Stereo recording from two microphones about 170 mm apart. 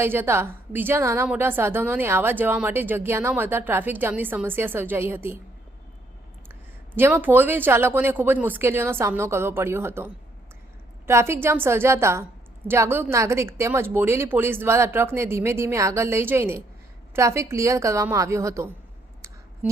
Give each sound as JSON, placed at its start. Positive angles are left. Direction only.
{"t": 0.0, "sound": "a woman's voice", "side_deg": -15}
{"t": 6.5, "sound": "a woman's voice", "side_deg": -10}